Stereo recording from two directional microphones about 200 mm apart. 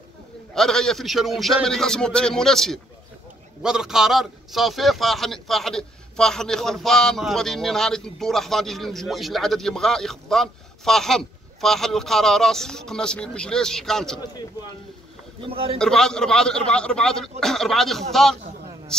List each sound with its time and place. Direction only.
0.6 s a man's voice: centre (ahead or behind)
15.5 s a man's voice: 30° right (ahead or behind)
15.8 s a man's voice: 5° left (ahead or behind)